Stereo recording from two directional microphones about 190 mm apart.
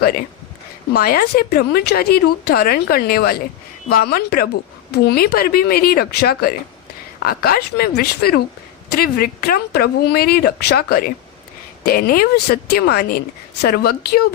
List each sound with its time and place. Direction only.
0.0 s a woman's voice: 55° left (ahead or behind)